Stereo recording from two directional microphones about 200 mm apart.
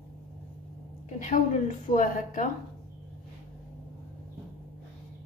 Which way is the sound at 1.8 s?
40° left (ahead or behind).